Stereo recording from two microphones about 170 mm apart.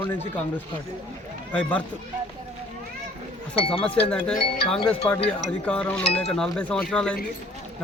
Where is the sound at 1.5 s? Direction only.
5° left (ahead or behind).